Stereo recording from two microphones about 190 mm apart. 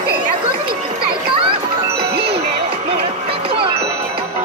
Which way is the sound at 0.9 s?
25° right (ahead or behind).